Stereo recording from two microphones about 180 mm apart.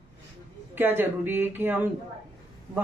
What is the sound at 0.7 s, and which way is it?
Speech, 10° right (ahead or behind).